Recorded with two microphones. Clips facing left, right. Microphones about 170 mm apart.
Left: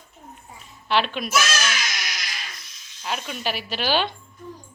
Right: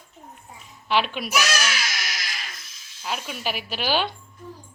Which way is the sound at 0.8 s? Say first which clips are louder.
Left 1 dB; 10° right (ahead or behind).